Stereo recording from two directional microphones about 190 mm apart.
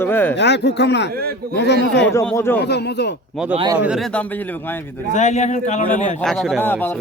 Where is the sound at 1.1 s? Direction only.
55° right (ahead or behind).